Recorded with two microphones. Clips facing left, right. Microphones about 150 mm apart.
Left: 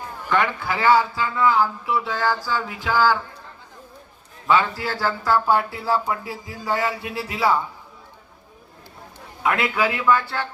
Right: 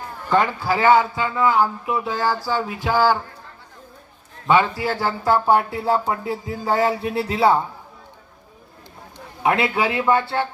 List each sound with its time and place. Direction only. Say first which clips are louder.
0.3 s speech: right 3 dB; 20° right (ahead or behind)
4.4 s speech: right 2 dB; 20° right (ahead or behind)
9.1 s a man's voice: right 3 dB; 25° right (ahead or behind)